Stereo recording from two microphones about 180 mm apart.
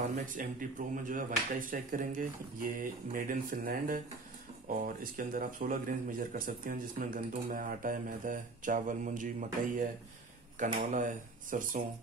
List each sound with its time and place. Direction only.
0.0 s speech: 45° right (ahead or behind)
10.9 s speech: 45° right (ahead or behind)